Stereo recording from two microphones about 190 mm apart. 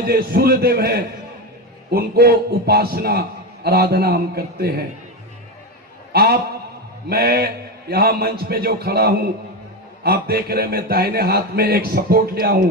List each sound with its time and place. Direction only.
0.0 s a man's voice: 55° right (ahead or behind)
6.1 s a man's voice: 55° right (ahead or behind)